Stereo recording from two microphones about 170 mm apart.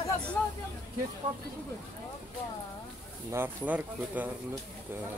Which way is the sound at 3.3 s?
10° right (ahead or behind).